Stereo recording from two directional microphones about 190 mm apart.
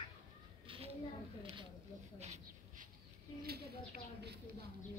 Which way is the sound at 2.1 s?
35° right (ahead or behind).